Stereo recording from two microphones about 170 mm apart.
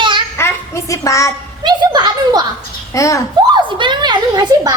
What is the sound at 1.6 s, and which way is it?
Speech, 25° right (ahead or behind).